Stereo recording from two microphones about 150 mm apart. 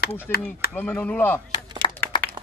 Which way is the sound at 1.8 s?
30° left (ahead or behind).